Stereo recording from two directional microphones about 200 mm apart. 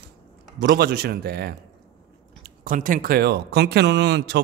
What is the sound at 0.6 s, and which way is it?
Speech, 50° right (ahead or behind).